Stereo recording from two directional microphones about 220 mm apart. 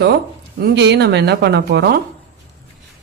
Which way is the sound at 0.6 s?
50° right (ahead or behind).